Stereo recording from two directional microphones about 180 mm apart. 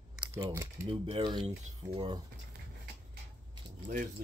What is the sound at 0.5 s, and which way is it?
Speech, 15° right (ahead or behind).